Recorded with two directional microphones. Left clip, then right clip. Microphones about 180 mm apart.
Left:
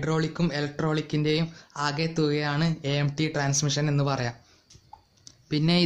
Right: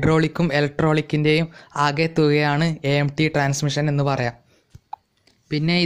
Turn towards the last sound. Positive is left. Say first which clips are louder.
# right 3 dB
turn(degrees=-15)  # may be behind; listen again after turning